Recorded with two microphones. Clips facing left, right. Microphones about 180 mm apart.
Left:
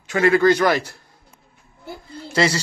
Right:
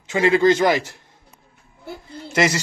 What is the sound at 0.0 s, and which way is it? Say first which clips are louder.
Speech: even; 20° right (ahead or behind).